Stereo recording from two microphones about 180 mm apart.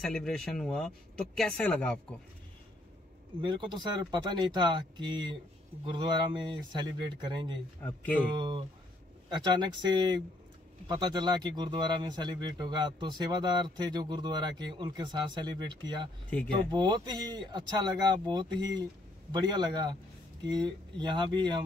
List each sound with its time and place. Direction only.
0.0 s speech: centre (ahead or behind)
3.3 s speech: 25° right (ahead or behind)
7.8 s speech: 10° left (ahead or behind)
8.4 s speech: 25° right (ahead or behind)